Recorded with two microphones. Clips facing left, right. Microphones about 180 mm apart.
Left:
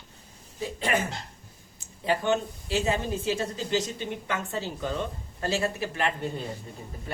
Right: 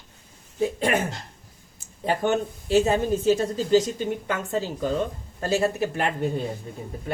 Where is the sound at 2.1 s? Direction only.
45° right (ahead or behind).